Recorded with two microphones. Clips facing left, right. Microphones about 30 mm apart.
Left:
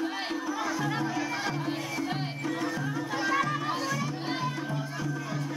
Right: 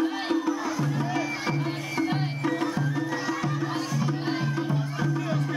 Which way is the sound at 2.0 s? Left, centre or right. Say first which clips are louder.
Right 5 dB; centre.